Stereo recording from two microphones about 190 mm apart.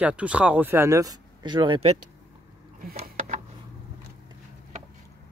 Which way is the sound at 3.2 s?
35° right (ahead or behind).